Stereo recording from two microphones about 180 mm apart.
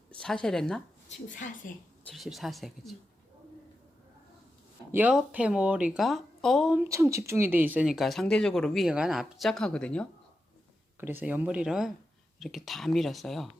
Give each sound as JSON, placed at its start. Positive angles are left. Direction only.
{"t": 0.1, "sound": "speech", "side_deg": 5}
{"t": 1.0, "sound": "speech", "side_deg": 45}
{"t": 2.1, "sound": "speech", "side_deg": 0}
{"t": 4.9, "sound": "speech", "side_deg": -10}
{"t": 6.8, "sound": "speech", "side_deg": -15}
{"t": 11.0, "sound": "speech", "side_deg": -10}